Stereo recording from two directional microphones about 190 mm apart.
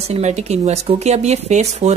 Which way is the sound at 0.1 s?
35° right (ahead or behind).